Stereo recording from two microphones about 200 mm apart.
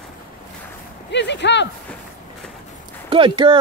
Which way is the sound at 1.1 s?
60° left (ahead or behind).